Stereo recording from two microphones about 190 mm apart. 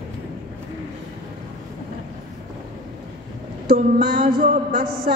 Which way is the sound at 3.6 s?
55° right (ahead or behind).